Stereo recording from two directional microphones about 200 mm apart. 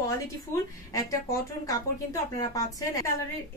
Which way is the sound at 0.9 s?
15° left (ahead or behind).